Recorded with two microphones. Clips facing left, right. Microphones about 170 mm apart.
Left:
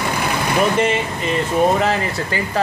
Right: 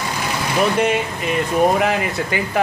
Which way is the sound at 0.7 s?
5° right (ahead or behind).